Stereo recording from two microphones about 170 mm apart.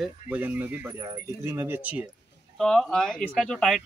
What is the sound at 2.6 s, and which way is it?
Speech, 5° left (ahead or behind).